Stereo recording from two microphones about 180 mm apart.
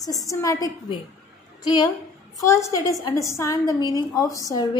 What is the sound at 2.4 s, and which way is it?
A woman's voice, 15° left (ahead or behind).